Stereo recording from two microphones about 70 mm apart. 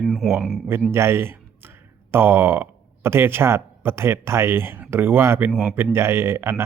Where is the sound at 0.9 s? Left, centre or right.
Right.